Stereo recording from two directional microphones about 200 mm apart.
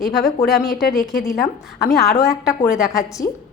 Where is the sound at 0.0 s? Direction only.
Centre (ahead or behind).